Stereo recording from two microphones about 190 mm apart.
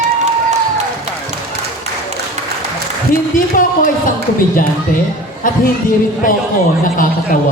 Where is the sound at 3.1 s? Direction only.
45° left (ahead or behind).